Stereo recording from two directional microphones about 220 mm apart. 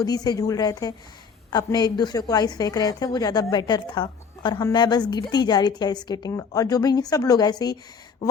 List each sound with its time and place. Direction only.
0.0 s a woman's voice: 15° left (ahead or behind)